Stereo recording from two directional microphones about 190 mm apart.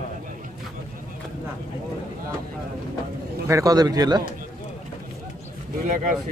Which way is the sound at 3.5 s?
20° right (ahead or behind).